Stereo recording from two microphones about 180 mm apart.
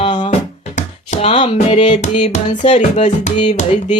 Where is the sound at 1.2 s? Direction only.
35° left (ahead or behind).